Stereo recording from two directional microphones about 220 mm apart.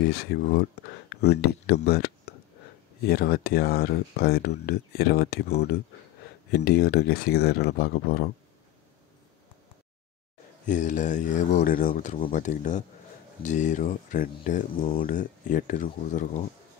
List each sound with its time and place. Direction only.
0.0 s speech: 45° left (ahead or behind)
10.7 s speech: 35° left (ahead or behind)